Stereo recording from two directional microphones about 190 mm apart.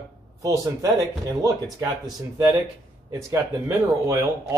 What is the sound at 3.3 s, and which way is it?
Speech, 15° right (ahead or behind).